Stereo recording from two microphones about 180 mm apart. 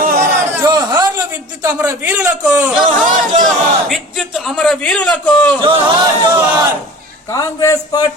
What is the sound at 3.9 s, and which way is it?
A man's voice, centre (ahead or behind).